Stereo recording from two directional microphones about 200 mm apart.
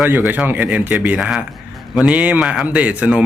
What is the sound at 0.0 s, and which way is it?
A man's voice, 10° right (ahead or behind).